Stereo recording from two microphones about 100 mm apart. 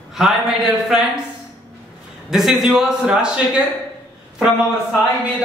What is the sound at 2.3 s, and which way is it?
Speech, centre (ahead or behind).